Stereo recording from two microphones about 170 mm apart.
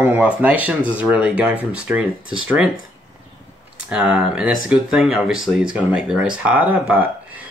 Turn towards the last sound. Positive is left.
turn(degrees=-10)  # may be behind; listen again after turning